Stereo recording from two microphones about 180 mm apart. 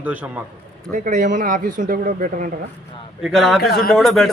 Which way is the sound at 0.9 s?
45° right (ahead or behind).